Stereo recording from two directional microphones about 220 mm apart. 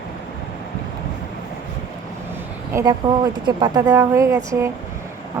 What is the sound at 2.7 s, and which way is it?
Speech, 20° right (ahead or behind).